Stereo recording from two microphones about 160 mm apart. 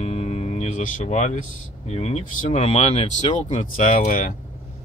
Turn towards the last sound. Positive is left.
turn(degrees=55)  # may be behind; listen again after turning